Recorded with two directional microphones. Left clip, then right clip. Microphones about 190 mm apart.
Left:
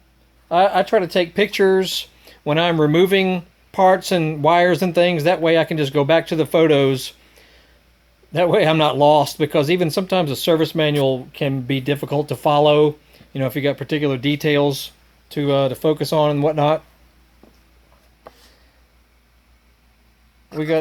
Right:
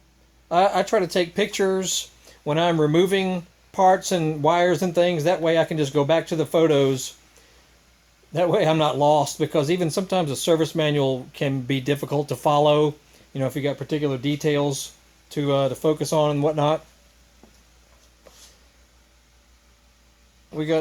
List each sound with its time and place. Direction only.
0.4 s speech: 5° left (ahead or behind); by 7.1 s 25° left (ahead or behind)
8.3 s speech: 20° left (ahead or behind)
20.5 s a man's voice: 10° left (ahead or behind)